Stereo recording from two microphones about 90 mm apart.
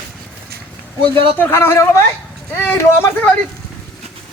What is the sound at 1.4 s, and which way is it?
Speech, 25° left (ahead or behind).